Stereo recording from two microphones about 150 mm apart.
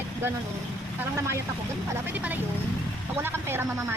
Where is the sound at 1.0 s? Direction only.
15° right (ahead or behind).